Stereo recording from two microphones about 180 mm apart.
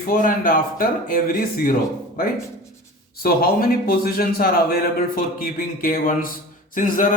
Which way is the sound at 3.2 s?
55° left (ahead or behind).